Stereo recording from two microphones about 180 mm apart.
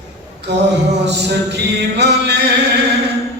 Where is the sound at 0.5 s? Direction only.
70° right (ahead or behind).